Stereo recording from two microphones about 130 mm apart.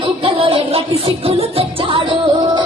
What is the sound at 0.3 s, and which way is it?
Music, 45° right (ahead or behind).